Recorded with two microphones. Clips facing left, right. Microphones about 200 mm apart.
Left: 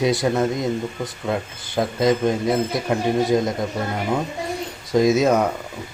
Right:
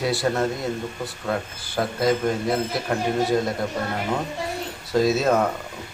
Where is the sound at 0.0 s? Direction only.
20° left (ahead or behind).